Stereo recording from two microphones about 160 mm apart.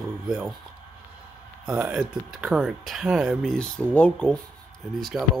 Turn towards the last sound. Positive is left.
turn(degrees=0)  # may be behind; listen again after turning